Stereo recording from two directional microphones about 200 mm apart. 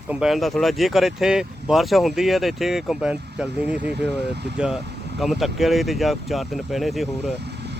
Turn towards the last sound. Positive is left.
turn(degrees=0)  # may be behind; listen again after turning